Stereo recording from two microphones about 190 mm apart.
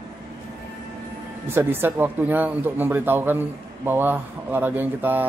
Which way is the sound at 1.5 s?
10° right (ahead or behind).